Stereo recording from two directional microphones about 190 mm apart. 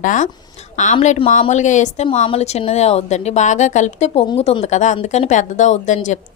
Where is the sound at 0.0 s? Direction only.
45° left (ahead or behind).